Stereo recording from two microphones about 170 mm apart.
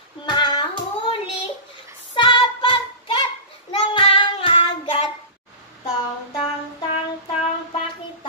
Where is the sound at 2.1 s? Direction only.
30° left (ahead or behind).